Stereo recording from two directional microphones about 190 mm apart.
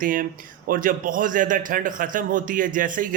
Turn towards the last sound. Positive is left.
turn(degrees=-45)  # may be behind; listen again after turning